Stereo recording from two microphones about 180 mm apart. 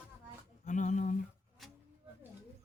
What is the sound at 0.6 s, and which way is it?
Speech, 45° left (ahead or behind).